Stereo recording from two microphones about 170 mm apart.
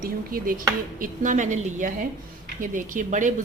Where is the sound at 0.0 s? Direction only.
60° right (ahead or behind).